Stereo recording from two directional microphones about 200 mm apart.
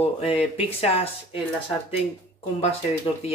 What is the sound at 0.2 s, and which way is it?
Speech, 30° left (ahead or behind).